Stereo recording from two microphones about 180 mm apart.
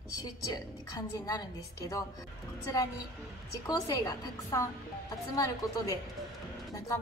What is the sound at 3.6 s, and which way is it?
A woman's voice, 20° left (ahead or behind).